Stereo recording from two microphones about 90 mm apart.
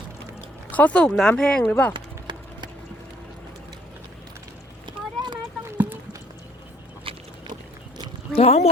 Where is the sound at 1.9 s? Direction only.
60° right (ahead or behind).